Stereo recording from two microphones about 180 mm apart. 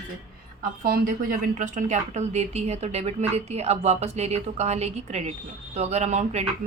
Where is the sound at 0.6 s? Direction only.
55° right (ahead or behind).